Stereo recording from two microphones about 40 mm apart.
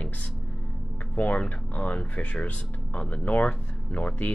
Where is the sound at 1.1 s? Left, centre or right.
Left.